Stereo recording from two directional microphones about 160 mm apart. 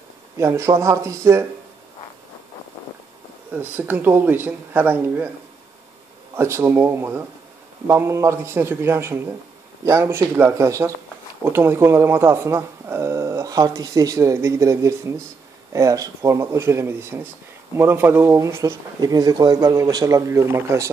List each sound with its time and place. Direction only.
0.4 s speech: 15° right (ahead or behind)
3.5 s speech: 10° right (ahead or behind)
6.3 s speech: 15° right (ahead or behind)